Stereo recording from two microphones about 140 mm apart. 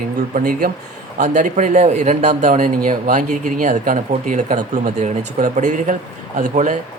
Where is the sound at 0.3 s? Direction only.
85° right.